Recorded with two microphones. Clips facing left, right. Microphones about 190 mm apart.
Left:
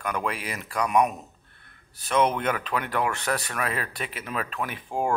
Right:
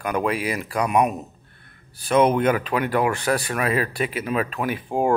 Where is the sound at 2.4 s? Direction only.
10° right (ahead or behind).